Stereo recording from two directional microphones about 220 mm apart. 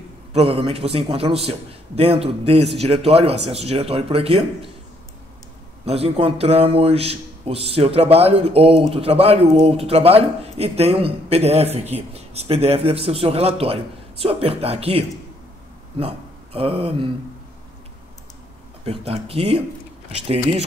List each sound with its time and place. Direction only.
0.3 s a man's voice: 25° right (ahead or behind)
5.9 s a man's voice: 25° right (ahead or behind)
18.9 s a man's voice: 25° right (ahead or behind)